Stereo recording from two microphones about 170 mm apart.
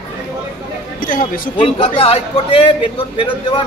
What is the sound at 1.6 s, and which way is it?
A man's voice, 35° left (ahead or behind).